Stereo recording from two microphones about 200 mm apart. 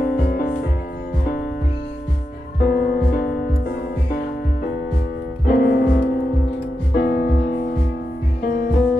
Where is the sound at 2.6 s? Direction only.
45° left (ahead or behind).